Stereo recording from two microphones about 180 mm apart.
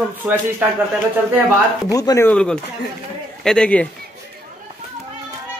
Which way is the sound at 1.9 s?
20° left (ahead or behind).